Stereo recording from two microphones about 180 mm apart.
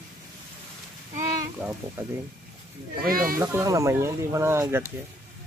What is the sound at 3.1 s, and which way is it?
Speech, 55° right (ahead or behind).